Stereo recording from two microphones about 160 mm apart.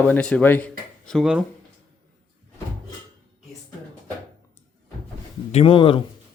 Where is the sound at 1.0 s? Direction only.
Centre (ahead or behind).